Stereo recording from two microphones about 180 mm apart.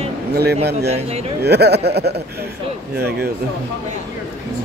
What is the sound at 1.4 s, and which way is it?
Speech, 65° right (ahead or behind).